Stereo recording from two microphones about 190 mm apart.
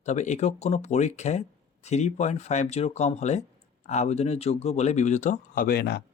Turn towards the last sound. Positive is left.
turn(degrees=55)  # may be behind; listen again after turning